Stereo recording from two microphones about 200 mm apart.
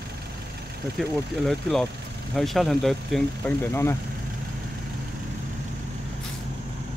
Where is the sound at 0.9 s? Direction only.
Centre (ahead or behind).